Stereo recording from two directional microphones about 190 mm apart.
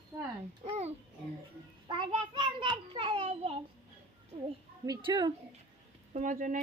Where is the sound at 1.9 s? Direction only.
25° right (ahead or behind).